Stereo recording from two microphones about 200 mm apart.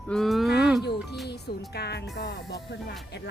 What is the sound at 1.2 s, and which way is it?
Speech, 55° left (ahead or behind).